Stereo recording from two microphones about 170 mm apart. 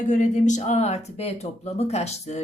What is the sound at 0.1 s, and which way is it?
Speech, 45° left (ahead or behind).